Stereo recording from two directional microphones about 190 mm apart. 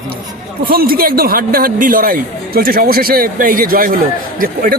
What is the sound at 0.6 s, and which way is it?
Speech, 50° right (ahead or behind).